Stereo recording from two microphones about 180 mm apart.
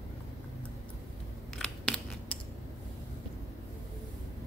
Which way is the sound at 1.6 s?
5° left (ahead or behind).